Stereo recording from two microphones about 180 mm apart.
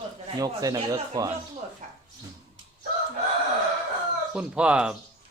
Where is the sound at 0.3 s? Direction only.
20° right (ahead or behind).